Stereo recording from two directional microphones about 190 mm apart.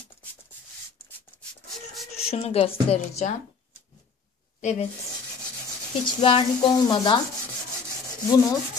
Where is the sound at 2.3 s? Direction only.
30° left (ahead or behind).